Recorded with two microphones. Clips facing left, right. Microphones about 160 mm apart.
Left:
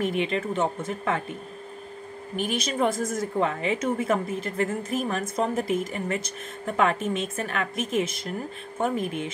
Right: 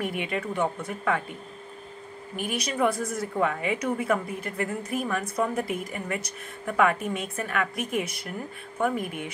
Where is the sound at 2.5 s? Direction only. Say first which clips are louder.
Even; 25° left (ahead or behind).